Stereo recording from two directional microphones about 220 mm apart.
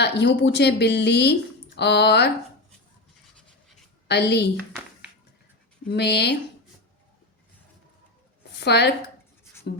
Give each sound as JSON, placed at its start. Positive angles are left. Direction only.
{"t": 0.0, "sound": "a woman's voice", "side_deg": 50}
{"t": 4.1, "sound": "a woman's voice", "side_deg": 50}
{"t": 5.9, "sound": "a woman's voice", "side_deg": 50}
{"t": 8.5, "sound": "a woman's voice", "side_deg": 50}